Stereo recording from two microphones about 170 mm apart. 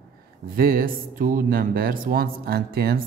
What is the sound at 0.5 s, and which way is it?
Speech, 60° right (ahead or behind).